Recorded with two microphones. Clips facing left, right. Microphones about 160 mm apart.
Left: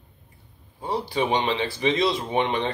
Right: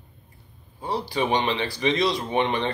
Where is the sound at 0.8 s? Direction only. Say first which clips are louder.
Left 1 dB; 20° left (ahead or behind).